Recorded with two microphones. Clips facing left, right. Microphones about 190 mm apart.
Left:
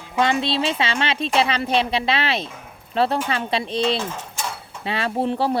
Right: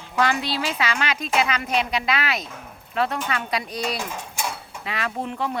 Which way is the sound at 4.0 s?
10° right (ahead or behind).